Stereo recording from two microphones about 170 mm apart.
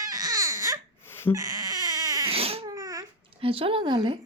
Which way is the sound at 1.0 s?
15° left (ahead or behind).